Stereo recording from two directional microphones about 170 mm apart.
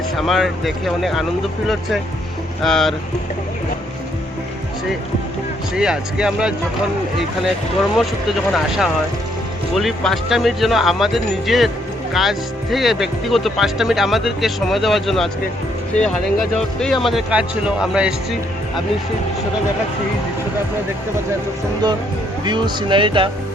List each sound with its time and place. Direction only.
0.2 s speech: centre (ahead or behind)
5.7 s speech: 5° right (ahead or behind)
8.5 s speech: centre (ahead or behind)
22.4 s speech: 25° right (ahead or behind)